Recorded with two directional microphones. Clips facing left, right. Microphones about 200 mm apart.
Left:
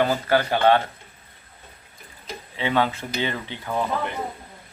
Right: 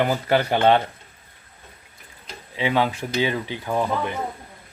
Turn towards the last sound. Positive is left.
turn(degrees=-15)  # may be behind; listen again after turning